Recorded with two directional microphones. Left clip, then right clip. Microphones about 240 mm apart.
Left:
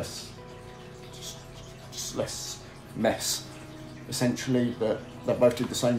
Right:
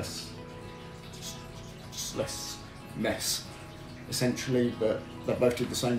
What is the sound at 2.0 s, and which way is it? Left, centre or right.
Music, centre.